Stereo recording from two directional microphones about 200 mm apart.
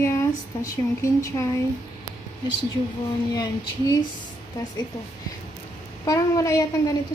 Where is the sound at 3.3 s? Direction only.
20° left (ahead or behind).